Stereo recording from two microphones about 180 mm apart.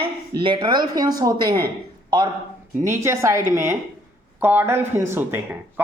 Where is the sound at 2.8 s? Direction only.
15° right (ahead or behind).